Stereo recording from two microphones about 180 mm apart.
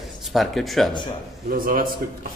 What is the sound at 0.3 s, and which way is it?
Speech, centre (ahead or behind).